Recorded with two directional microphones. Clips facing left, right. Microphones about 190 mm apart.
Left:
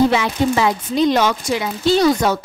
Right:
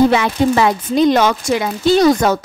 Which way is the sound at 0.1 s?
55° right (ahead or behind).